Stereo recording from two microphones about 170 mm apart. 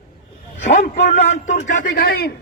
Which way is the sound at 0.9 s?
40° left (ahead or behind).